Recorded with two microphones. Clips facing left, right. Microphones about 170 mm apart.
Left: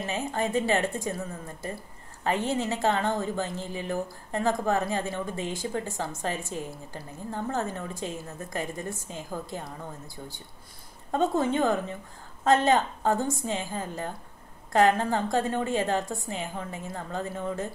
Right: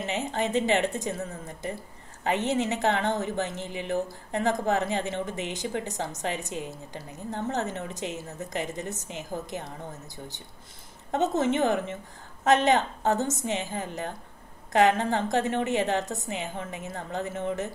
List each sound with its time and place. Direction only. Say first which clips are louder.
0.0 s a woman's voice: even; 20° right (ahead or behind)
2.2 s a woman's voice: right 1 dB; 20° right (ahead or behind)